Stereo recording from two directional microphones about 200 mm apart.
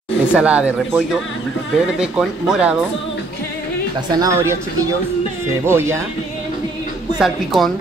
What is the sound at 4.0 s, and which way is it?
Speech, 20° right (ahead or behind).